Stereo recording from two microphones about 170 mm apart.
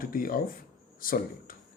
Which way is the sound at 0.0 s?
55° left (ahead or behind).